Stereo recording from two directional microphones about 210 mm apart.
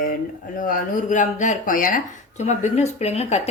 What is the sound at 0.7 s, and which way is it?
A woman's voice, 35° left (ahead or behind).